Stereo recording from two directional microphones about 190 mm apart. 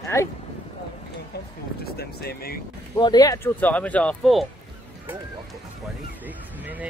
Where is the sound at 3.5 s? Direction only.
10° left (ahead or behind).